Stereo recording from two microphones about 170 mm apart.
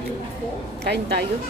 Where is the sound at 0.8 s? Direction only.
75° right (ahead or behind).